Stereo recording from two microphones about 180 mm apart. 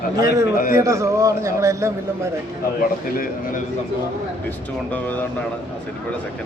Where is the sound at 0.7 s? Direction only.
15° right (ahead or behind).